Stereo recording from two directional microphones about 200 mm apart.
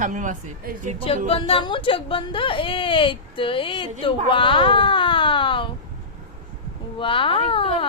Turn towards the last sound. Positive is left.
turn(degrees=25)  # may be behind; listen again after turning